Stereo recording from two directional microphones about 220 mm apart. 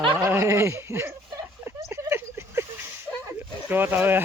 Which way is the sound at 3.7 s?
10° right (ahead or behind).